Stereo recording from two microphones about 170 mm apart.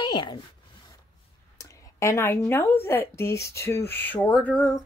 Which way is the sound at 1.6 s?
15° left (ahead or behind).